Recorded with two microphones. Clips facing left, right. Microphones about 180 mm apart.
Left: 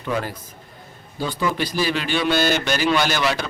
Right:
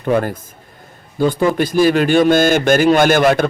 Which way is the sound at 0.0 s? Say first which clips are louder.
Right 9 dB; 50° right (ahead or behind).